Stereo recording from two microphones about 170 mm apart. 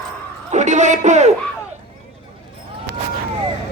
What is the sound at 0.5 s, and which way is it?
Speech, 45° right (ahead or behind).